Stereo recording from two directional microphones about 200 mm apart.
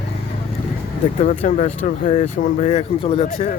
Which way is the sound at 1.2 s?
40° left (ahead or behind).